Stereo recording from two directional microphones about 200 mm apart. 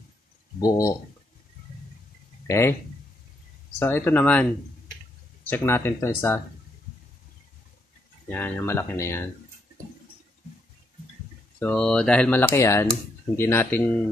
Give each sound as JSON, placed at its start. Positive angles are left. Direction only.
{"t": 0.6, "sound": "speech", "side_deg": 15}
{"t": 2.4, "sound": "speech", "side_deg": 15}
{"t": 3.8, "sound": "speech", "side_deg": 10}
{"t": 5.5, "sound": "speech", "side_deg": 10}
{"t": 8.3, "sound": "speech", "side_deg": 10}
{"t": 11.6, "sound": "speech", "side_deg": 5}